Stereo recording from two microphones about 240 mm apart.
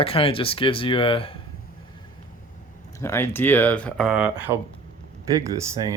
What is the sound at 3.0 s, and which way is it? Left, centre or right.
Speech, centre.